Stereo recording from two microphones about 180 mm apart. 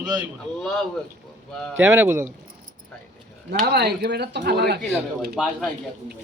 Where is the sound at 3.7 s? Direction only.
65° right (ahead or behind).